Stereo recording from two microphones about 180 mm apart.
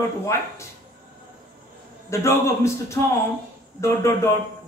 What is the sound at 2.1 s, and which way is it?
A man's voice, 15° left (ahead or behind).